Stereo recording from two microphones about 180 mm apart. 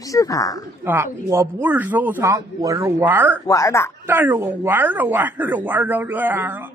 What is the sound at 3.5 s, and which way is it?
Speech, 15° left (ahead or behind).